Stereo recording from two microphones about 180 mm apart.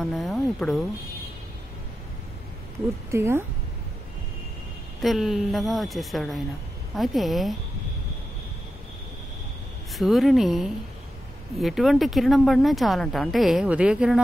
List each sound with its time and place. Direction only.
0.0 s speech: centre (ahead or behind)
3.1 s a woman's voice: 15° right (ahead or behind)
5.0 s speech: centre (ahead or behind)
9.9 s speech: centre (ahead or behind)